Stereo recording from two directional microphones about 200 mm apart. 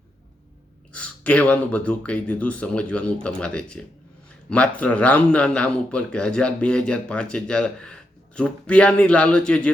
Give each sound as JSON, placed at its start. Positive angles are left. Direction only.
{"t": 0.9, "sound": "a man's voice", "side_deg": 5}